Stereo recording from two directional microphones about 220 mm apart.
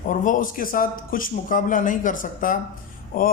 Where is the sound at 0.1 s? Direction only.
35° left (ahead or behind).